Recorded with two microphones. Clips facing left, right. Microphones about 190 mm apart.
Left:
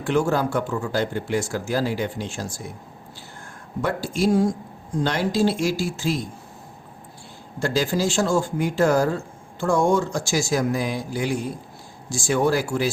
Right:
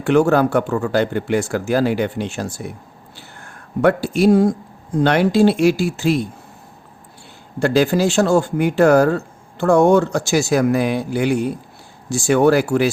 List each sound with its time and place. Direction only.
0.0 s speech: 65° right (ahead or behind)
7.6 s speech: 65° right (ahead or behind)